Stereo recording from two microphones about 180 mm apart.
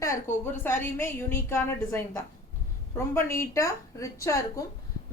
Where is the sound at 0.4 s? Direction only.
10° left (ahead or behind).